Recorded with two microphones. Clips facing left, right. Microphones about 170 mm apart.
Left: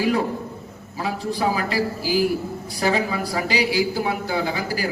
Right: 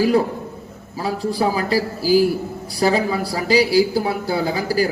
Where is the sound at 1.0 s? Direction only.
35° right (ahead or behind).